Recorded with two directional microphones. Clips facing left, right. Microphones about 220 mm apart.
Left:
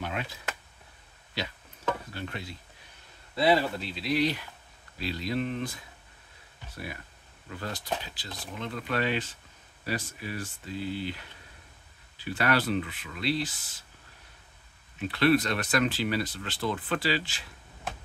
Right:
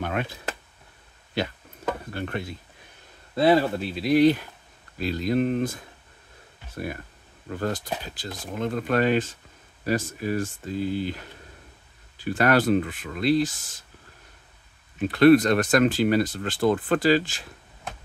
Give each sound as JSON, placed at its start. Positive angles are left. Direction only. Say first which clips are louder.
{"t": 0.0, "sound": "a sound", "louder": "right 6 dB", "side_deg": -55}
{"t": 2.1, "sound": "speech", "louder": "right 7 dB", "side_deg": -55}
{"t": 15.0, "sound": "speech", "louder": "right 8 dB", "side_deg": -50}